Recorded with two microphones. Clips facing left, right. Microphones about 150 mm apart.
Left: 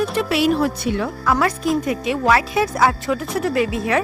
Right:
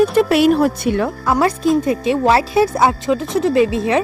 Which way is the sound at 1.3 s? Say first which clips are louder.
Right 3 dB; 25° right (ahead or behind).